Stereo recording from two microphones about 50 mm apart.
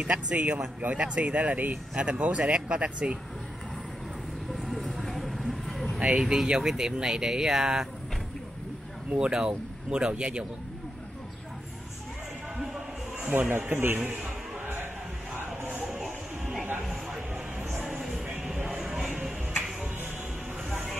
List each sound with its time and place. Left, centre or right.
0.0 s speech: right
4.5 s vehicle: centre
5.9 s speech: centre
9.2 s speech: centre
13.5 s speech: right
15.7 s a sound: centre
17.8 s music: centre